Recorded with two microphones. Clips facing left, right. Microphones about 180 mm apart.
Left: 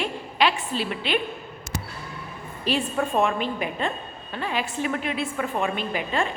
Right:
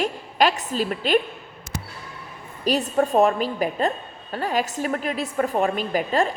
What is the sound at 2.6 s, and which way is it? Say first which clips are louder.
A woman's voice: right 4 dB; 40° right (ahead or behind).